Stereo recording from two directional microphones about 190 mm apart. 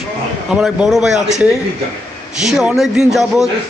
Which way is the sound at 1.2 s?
35° right (ahead or behind).